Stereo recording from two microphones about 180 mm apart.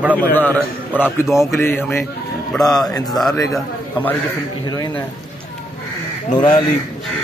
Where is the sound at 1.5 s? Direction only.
10° left (ahead or behind).